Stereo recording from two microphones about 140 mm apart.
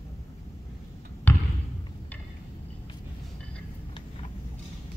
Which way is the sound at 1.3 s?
15° left (ahead or behind).